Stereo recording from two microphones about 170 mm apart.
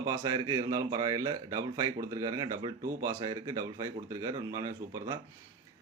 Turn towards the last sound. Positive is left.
turn(degrees=-20)  # may be behind; listen again after turning